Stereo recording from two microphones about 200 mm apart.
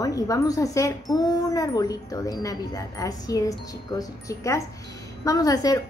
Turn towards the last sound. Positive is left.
turn(degrees=20)  # may be behind; listen again after turning